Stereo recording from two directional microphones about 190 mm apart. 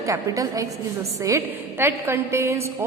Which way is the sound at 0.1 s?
15° right (ahead or behind).